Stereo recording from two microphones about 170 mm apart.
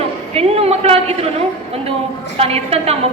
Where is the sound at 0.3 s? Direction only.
35° right (ahead or behind).